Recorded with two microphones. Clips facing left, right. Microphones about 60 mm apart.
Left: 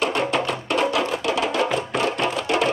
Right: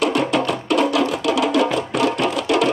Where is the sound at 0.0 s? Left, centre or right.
Left.